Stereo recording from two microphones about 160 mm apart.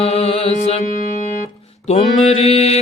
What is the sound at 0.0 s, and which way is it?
Mantra, 40° left (ahead or behind).